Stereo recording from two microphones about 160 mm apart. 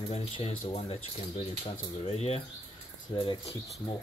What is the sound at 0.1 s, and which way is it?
Speech, 35° left (ahead or behind).